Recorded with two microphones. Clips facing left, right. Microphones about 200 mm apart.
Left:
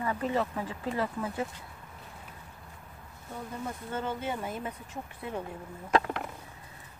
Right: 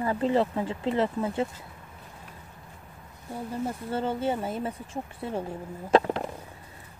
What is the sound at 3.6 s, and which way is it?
Speech, 30° right (ahead or behind).